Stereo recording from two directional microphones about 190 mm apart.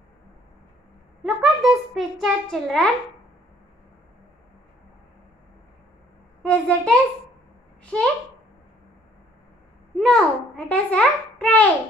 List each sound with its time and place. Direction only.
1.2 s a child's voice: centre (ahead or behind)
6.4 s a child's voice: 5° left (ahead or behind)
7.8 s a sound: 5° left (ahead or behind)
9.9 s a child's voice: 5° left (ahead or behind)